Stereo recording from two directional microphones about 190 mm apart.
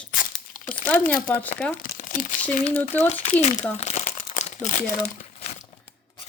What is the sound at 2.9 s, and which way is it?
Speech, 10° left (ahead or behind).